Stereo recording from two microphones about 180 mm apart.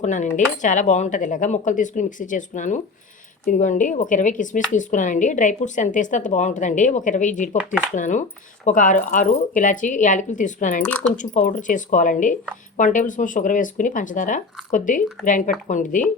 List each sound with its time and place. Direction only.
0.0 s speech: 45° left (ahead or behind)